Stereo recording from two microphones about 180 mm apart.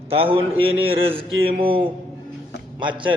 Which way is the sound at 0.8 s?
30° right (ahead or behind).